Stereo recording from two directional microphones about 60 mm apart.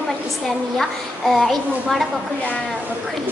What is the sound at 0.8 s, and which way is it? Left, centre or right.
A child's voice, centre.